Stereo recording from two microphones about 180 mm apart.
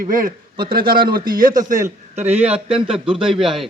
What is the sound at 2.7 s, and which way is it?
Speech, 5° right (ahead or behind).